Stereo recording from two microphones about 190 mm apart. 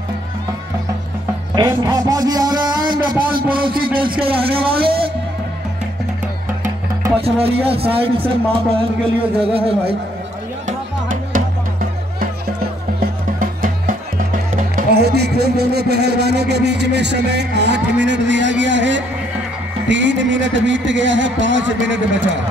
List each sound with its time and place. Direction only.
1.8 s speech: 20° right (ahead or behind)
2.9 s a sound: 50° right (ahead or behind)
4.0 s speech: 25° right (ahead or behind)
7.2 s speech: 30° right (ahead or behind)
10.7 s music: 45° right (ahead or behind)
13.4 s music: 45° right (ahead or behind)
14.8 s a man's voice: 60° right (ahead or behind); by 22.4 s 75° right (ahead or behind)